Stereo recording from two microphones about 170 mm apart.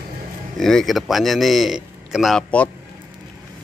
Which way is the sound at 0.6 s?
Centre (ahead or behind).